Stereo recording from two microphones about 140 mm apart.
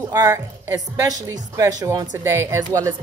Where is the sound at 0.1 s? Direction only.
15° right (ahead or behind).